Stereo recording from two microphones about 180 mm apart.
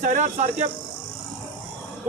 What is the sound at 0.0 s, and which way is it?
Speech, 45° right (ahead or behind).